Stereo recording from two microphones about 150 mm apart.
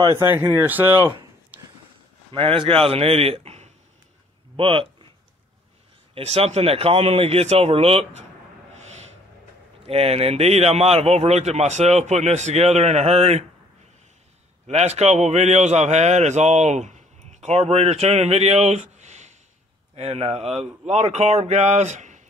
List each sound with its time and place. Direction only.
0.0 s speech: 15° right (ahead or behind)
2.3 s a man's voice: 35° right (ahead or behind)
6.1 s a man's voice: 45° right (ahead or behind)
8.7 s a sound: 50° right (ahead or behind)
9.8 s a man's voice: 40° right (ahead or behind)
14.7 s a man's voice: 45° right (ahead or behind)